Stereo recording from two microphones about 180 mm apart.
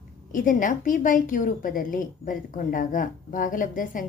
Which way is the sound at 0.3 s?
45° left (ahead or behind).